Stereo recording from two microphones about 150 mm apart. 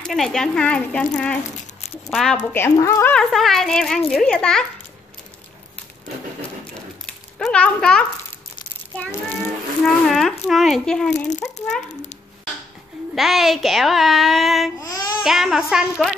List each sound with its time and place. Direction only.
0.0 s speech: centre (ahead or behind)
2.5 s speech: 15° left (ahead or behind)
3.2 s speech: centre (ahead or behind)
7.3 s speech: 5° left (ahead or behind)
10.0 s speech: 5° left (ahead or behind)
11.1 s a child's voice: 50° left (ahead or behind)
13.1 s speech: centre (ahead or behind)
14.8 s speech: 25° left (ahead or behind)
15.2 s speech: centre (ahead or behind)